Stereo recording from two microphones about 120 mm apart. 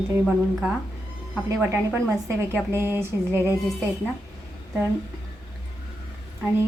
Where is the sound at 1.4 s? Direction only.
20° right (ahead or behind).